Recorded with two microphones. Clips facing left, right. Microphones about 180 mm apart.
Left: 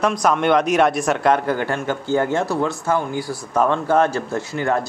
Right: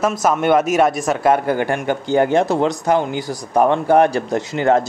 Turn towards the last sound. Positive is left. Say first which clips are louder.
# right 5 dB
turn(degrees=-20)  # may be behind; listen again after turning